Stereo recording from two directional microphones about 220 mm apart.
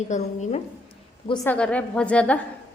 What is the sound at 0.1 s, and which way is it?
Speech, 30° left (ahead or behind).